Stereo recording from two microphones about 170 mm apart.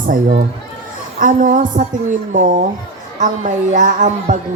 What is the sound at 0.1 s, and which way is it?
Speech, 50° right (ahead or behind).